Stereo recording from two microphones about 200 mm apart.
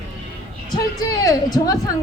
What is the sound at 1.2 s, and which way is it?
Speech, 20° left (ahead or behind).